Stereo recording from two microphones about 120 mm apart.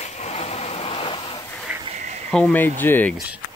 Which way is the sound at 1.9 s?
75° right (ahead or behind).